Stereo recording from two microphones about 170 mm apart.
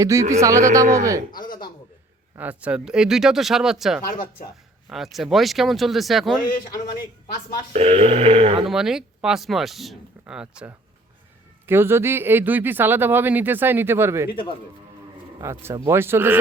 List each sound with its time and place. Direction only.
0.0 s speech: 20° right (ahead or behind)
2.3 s speech: 10° right (ahead or behind)
4.0 s speech: 60° left (ahead or behind)
4.9 s speech: centre (ahead or behind)
7.7 s speech: 35° right (ahead or behind)
8.6 s speech: 5° right (ahead or behind)
15.4 s speech: 15° right (ahead or behind)